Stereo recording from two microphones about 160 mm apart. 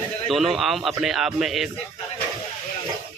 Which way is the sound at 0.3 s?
Centre (ahead or behind).